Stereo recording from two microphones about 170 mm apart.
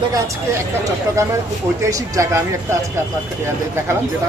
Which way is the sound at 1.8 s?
20° right (ahead or behind).